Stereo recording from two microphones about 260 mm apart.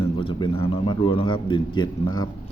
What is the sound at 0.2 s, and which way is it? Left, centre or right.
A man's voice, centre.